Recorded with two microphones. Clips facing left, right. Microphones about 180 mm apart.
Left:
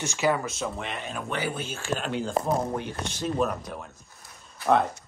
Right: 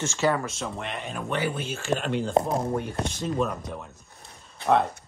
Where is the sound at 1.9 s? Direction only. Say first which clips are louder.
Right 3 dB; 20° right (ahead or behind).